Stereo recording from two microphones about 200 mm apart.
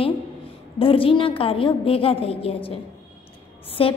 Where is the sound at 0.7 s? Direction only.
25° left (ahead or behind).